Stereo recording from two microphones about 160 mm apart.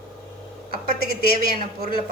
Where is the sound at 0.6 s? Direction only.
75° right (ahead or behind).